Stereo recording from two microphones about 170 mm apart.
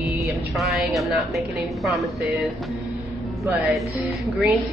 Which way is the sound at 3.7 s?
Centre (ahead or behind).